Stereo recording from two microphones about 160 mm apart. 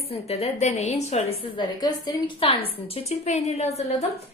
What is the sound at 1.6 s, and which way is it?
Speech, 25° left (ahead or behind).